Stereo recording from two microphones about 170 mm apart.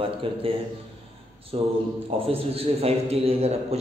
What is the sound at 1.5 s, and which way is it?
A man's voice, 35° right (ahead or behind).